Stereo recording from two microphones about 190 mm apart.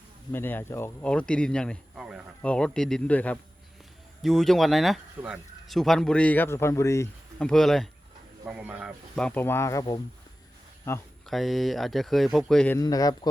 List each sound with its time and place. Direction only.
0.3 s speech: 10° left (ahead or behind)
7.3 s speech: 5° left (ahead or behind)
9.1 s speech: 5° left (ahead or behind)
10.9 s speech: 15° left (ahead or behind)
11.3 s speech: centre (ahead or behind)
12.8 s a man's voice: 20° left (ahead or behind)